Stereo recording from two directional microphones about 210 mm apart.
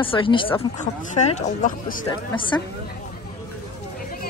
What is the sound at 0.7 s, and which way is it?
Speech, 35° left (ahead or behind).